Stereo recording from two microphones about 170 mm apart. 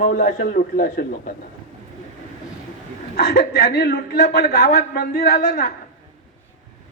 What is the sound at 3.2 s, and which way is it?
A man's voice, 80° left.